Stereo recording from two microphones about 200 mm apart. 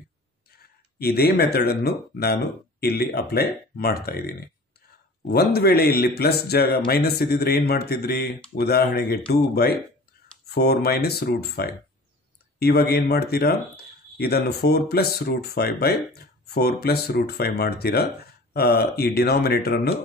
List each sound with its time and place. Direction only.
0.9 s speech: 50° left (ahead or behind)
10.5 s speech: 55° left (ahead or behind)